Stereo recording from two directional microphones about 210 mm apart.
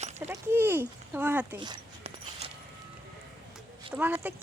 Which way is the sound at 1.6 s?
25° right (ahead or behind).